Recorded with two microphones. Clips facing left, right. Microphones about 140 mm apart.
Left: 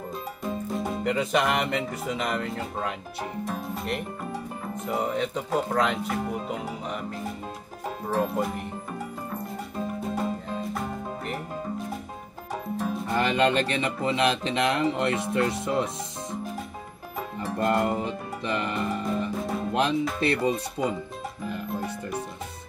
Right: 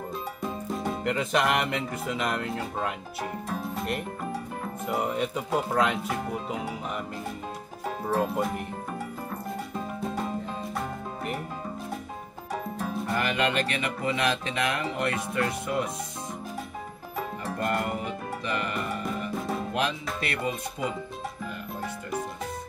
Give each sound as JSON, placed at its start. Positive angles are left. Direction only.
{"t": 1.0, "sound": "speech", "side_deg": 0}
{"t": 8.1, "sound": "music", "side_deg": 0}
{"t": 10.8, "sound": "music", "side_deg": 0}
{"t": 13.1, "sound": "speech", "side_deg": 30}
{"t": 17.6, "sound": "speech", "side_deg": 25}
{"t": 20.2, "sound": "speech", "side_deg": 30}